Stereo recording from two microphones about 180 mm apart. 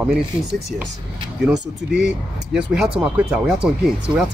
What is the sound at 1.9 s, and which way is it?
Speech, 5° right (ahead or behind).